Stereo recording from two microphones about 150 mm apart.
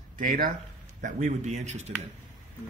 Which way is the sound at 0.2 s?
70° right (ahead or behind).